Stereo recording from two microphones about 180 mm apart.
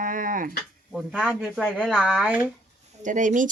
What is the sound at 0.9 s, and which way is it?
Speech, 5° right (ahead or behind).